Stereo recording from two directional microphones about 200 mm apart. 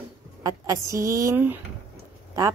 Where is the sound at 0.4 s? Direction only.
15° right (ahead or behind).